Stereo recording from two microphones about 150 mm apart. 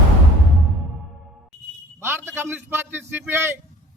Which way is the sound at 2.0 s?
15° right (ahead or behind).